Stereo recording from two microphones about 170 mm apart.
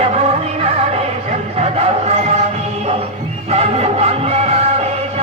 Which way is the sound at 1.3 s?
40° right (ahead or behind).